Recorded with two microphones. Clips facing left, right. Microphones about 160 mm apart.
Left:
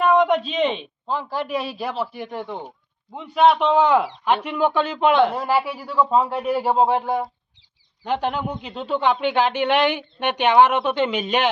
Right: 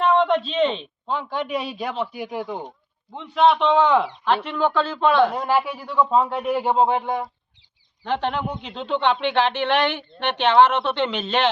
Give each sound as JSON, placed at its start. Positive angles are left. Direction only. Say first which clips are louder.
{"t": 0.0, "sound": "a man's voice", "louder": "left 1 dB", "side_deg": 10}
{"t": 2.6, "sound": "a man's voice", "louder": "right 1 dB", "side_deg": 10}
{"t": 5.3, "sound": "a man's voice", "louder": "even", "side_deg": 5}